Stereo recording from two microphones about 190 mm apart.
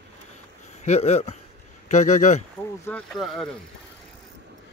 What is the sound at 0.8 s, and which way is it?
Speech, 35° left (ahead or behind).